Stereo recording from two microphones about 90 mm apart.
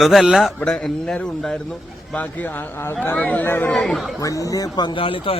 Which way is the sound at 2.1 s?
20° left (ahead or behind).